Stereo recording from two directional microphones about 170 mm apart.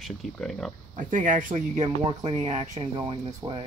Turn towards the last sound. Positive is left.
turn(degrees=-30)  # may be behind; listen again after turning